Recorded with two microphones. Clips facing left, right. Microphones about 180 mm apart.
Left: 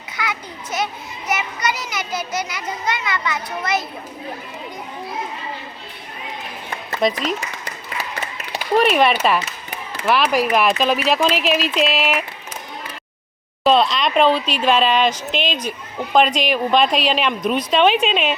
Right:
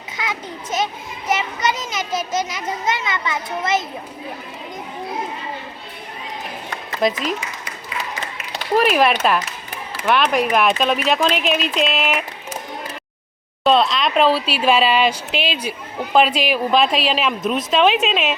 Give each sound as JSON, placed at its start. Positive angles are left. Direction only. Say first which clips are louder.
{"t": 0.2, "sound": "a sound", "louder": "even", "side_deg": -25}
{"t": 1.3, "sound": "a child's voice", "louder": "right 2 dB", "side_deg": -25}
{"t": 7.0, "sound": "speech", "louder": "even", "side_deg": 0}
{"t": 8.7, "sound": "speech", "louder": "even", "side_deg": 0}
{"t": 13.7, "sound": "speech", "louder": "even", "side_deg": 0}